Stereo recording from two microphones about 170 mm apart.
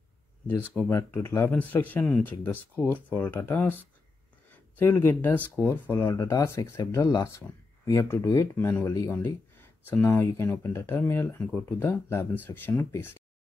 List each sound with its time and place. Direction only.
0.6 s speech: 10° left (ahead or behind)